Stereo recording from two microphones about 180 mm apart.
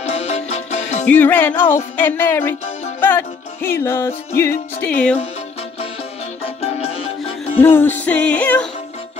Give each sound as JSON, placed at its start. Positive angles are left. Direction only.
{"t": 0.0, "sound": "music", "side_deg": 35}
{"t": 1.0, "sound": "music", "side_deg": 10}
{"t": 6.4, "sound": "music", "side_deg": 35}
{"t": 7.6, "sound": "music", "side_deg": 10}